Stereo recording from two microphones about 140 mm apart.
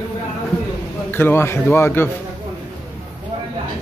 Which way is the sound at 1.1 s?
15° left (ahead or behind).